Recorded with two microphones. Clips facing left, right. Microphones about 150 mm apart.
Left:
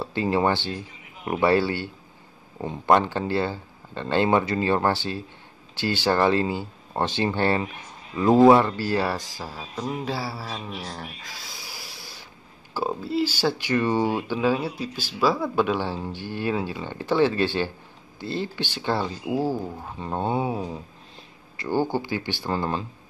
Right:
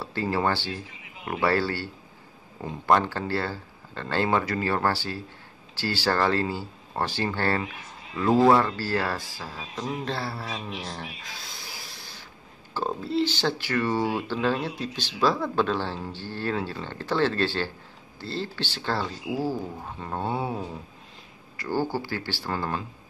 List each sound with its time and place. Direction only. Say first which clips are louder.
0.0 s speech: left 4 dB; 20° left (ahead or behind); by 11.5 s centre (ahead or behind)
12.7 s speech: left 1 dB; 5° left (ahead or behind); by 22.8 s 25° left (ahead or behind)